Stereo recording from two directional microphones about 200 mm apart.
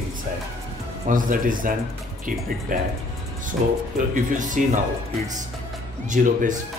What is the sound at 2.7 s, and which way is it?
Speech, 45° right (ahead or behind).